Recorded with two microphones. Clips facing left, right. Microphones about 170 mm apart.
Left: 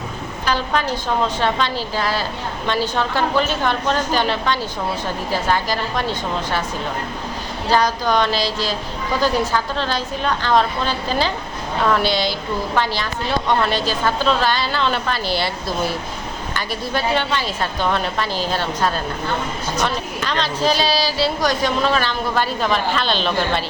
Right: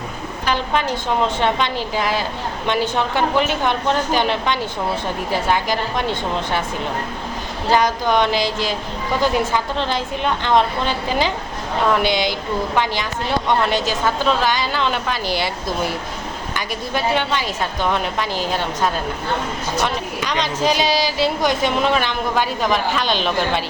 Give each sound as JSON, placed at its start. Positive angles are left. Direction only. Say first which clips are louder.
{"t": 0.4, "sound": "a woman's voice", "louder": "even", "side_deg": -20}
{"t": 7.7, "sound": "a woman's voice", "louder": "right 1 dB", "side_deg": -20}
{"t": 16.6, "sound": "a woman's voice", "louder": "even", "side_deg": -15}